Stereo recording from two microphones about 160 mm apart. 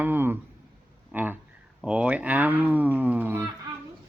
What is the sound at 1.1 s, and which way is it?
Speech, 10° right (ahead or behind).